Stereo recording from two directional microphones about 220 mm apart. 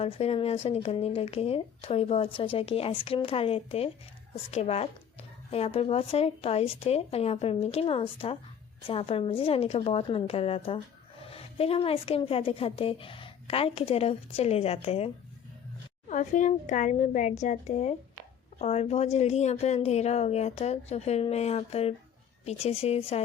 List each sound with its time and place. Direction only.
0.0 s speech: 25° left (ahead or behind)